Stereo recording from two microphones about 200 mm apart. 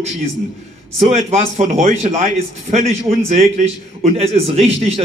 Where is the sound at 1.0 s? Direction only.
30° right (ahead or behind).